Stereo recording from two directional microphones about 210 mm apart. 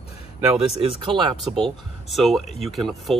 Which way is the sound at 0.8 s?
20° right (ahead or behind).